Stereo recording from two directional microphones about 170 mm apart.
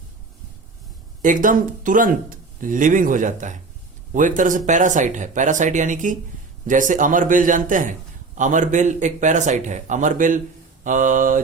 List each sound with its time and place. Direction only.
1.2 s speech: 50° right (ahead or behind)